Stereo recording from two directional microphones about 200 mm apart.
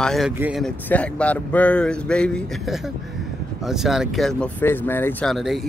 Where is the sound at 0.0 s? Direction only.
Centre (ahead or behind).